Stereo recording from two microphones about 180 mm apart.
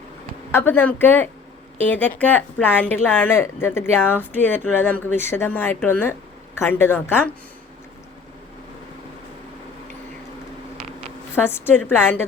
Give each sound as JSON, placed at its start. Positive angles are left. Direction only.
{"t": 0.5, "sound": "speech", "side_deg": 10}
{"t": 11.3, "sound": "speech", "side_deg": 10}